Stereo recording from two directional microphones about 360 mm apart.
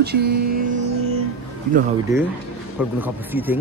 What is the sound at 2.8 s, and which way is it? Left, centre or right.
Speech, centre.